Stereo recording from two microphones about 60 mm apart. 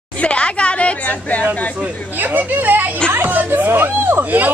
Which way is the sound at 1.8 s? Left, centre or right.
Right.